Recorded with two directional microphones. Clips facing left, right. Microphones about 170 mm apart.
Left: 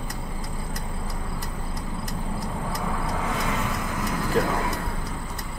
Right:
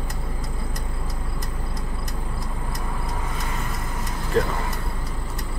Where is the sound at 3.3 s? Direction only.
90° left.